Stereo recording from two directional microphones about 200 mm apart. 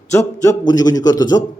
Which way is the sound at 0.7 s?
20° left (ahead or behind).